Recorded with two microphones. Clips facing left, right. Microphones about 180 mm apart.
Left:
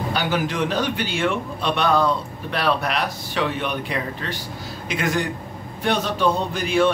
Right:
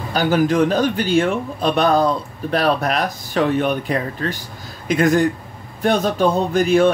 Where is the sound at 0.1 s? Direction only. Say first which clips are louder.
Right 9 dB; 45° right (ahead or behind).